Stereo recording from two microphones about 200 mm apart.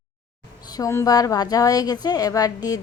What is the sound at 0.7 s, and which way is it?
A woman's voice, 15° left (ahead or behind).